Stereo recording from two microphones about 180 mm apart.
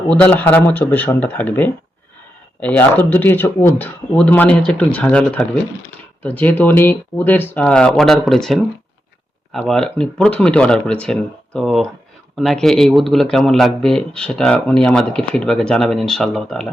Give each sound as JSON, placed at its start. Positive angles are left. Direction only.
{"t": 0.1, "sound": "a man's voice", "side_deg": 10}